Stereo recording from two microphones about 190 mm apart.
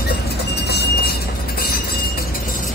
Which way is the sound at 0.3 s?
60° left (ahead or behind).